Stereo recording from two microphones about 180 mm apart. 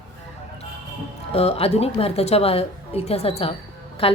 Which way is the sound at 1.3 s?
35° left (ahead or behind).